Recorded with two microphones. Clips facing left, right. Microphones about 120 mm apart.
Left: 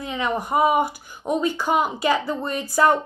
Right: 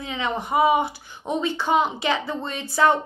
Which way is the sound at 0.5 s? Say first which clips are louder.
Even; 45° left (ahead or behind).